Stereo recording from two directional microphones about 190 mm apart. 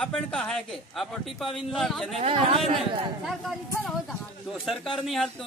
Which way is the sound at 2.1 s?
35° right (ahead or behind).